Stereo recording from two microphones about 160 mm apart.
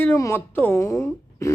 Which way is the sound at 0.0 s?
15° left (ahead or behind).